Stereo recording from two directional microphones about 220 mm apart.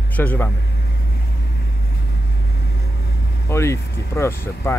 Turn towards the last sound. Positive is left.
turn(degrees=10)  # may be behind; listen again after turning